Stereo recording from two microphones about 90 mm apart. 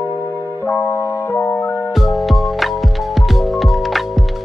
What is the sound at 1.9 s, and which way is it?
Music, centre (ahead or behind).